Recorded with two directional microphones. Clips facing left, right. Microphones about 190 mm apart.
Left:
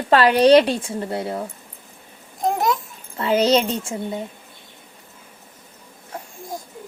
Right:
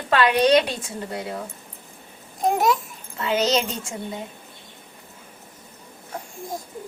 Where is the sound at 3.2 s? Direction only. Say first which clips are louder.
Left 5 dB; 30° left (ahead or behind).